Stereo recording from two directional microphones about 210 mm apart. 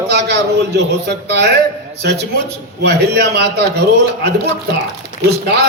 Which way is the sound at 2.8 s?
50° right (ahead or behind).